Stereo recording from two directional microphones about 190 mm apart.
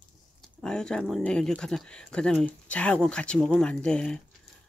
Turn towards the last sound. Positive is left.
turn(degrees=5)  # may be behind; listen again after turning